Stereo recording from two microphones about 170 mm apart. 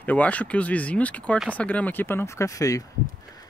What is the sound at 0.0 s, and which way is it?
Speech, 10° left (ahead or behind).